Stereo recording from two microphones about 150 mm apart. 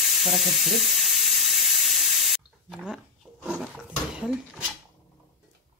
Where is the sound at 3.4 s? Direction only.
5° right (ahead or behind).